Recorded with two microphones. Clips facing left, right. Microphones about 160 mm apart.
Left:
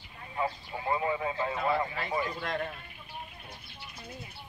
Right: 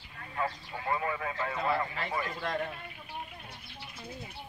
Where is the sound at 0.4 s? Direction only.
20° left (ahead or behind).